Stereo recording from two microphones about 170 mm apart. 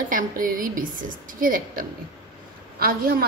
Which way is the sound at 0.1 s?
55° right (ahead or behind).